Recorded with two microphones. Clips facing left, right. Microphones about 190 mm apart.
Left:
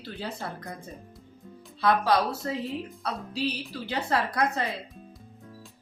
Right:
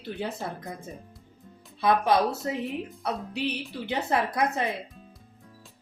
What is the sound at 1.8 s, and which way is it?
Speech, 20° right (ahead or behind).